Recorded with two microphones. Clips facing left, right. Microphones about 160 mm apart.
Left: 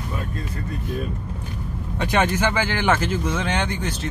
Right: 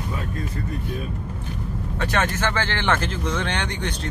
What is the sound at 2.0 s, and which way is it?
Speech, 15° left (ahead or behind).